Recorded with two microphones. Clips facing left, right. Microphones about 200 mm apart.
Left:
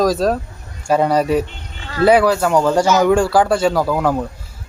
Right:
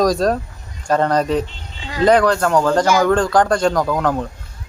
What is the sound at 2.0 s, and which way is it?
A man's voice, 5° left (ahead or behind).